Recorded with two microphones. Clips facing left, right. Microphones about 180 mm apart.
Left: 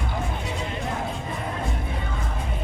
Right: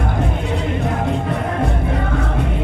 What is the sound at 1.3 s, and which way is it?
Music, 70° right (ahead or behind).